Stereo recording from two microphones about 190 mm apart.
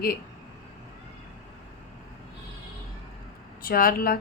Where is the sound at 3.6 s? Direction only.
50° left (ahead or behind).